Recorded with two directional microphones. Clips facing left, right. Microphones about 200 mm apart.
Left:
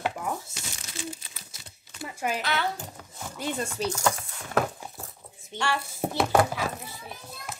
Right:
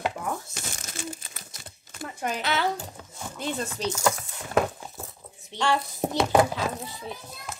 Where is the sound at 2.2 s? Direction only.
5° left (ahead or behind).